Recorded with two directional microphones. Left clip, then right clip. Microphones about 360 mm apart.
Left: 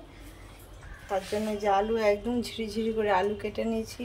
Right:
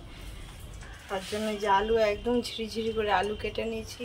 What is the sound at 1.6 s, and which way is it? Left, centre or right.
Speech, centre.